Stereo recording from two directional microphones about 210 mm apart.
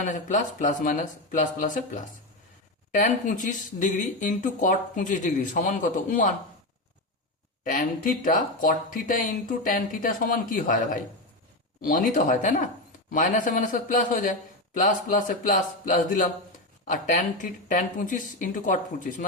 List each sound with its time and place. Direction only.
0.0 s speech: 35° left (ahead or behind)
7.6 s speech: 40° left (ahead or behind)
11.8 s speech: 40° left (ahead or behind)